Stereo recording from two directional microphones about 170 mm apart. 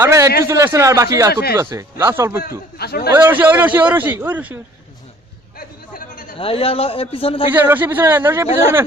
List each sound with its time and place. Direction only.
0.0 s a sound: 15° right (ahead or behind)
0.4 s a man's voice: 15° right (ahead or behind)
1.3 s speech: 70° left (ahead or behind)
1.5 s a man's voice: 15° right (ahead or behind)
2.7 s speech: 65° left (ahead or behind)
3.1 s a man's voice: 10° right (ahead or behind)
5.5 s a sound: 55° left (ahead or behind)
6.4 s a man's voice: 35° left (ahead or behind)
7.5 s a man's voice: 10° right (ahead or behind)